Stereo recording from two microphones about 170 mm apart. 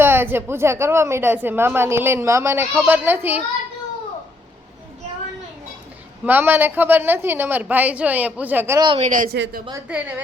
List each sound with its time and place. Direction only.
0.0 s a woman's voice: 10° right (ahead or behind)
6.2 s a woman's voice: 10° right (ahead or behind)
9.0 s speech: 50° right (ahead or behind)